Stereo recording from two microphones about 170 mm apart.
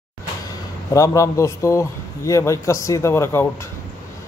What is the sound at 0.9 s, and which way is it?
Speech, 20° left (ahead or behind).